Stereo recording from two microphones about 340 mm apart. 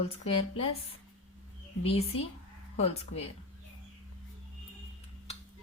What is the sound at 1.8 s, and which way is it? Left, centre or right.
Speech, centre.